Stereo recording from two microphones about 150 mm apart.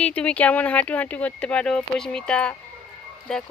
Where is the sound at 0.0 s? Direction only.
10° left (ahead or behind).